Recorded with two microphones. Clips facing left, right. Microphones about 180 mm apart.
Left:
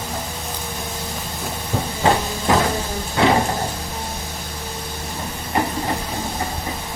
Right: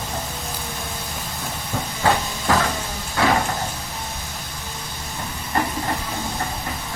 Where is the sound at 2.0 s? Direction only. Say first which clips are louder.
Left 2 dB; 20° left (ahead or behind).